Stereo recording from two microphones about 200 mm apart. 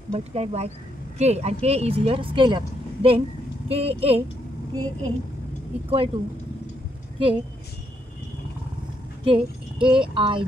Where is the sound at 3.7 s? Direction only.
30° right (ahead or behind).